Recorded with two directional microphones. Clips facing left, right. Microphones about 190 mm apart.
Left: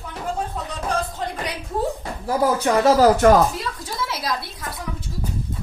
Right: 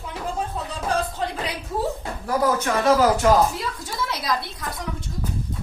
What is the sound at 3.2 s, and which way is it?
Speech, 55° left (ahead or behind).